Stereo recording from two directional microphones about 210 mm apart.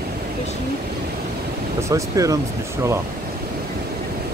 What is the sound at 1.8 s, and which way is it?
Speech, 15° right (ahead or behind).